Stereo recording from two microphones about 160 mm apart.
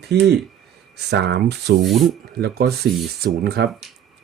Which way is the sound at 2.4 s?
80° right.